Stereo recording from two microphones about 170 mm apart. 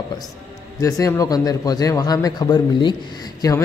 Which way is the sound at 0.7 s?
20° left (ahead or behind).